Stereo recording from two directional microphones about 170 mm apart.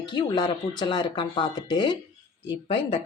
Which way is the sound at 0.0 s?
25° left (ahead or behind).